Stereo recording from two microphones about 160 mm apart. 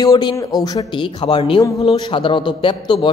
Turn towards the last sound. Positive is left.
turn(degrees=30)  # may be behind; listen again after turning